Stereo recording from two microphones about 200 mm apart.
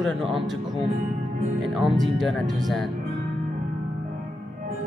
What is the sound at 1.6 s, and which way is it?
Speech, centre (ahead or behind).